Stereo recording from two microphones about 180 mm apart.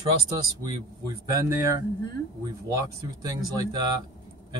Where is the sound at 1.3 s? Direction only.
15° right (ahead or behind).